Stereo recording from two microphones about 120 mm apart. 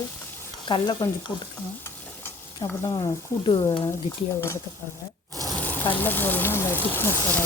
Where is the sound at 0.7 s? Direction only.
35° left (ahead or behind).